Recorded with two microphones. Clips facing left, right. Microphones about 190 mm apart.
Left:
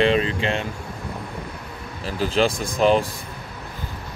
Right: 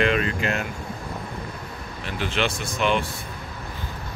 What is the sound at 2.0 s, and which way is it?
Speech, 35° left (ahead or behind).